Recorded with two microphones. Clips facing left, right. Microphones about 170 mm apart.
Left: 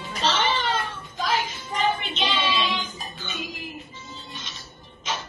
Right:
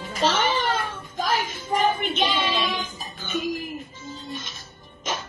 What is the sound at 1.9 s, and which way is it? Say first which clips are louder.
Speech: right 3 dB; 50° right (ahead or behind).